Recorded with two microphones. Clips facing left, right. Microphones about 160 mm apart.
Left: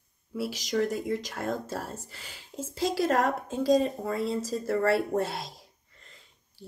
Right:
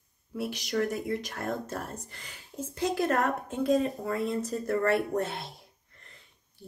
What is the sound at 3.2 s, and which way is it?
Speech, 35° left (ahead or behind).